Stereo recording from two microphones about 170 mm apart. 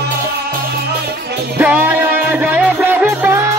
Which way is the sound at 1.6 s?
10° right (ahead or behind).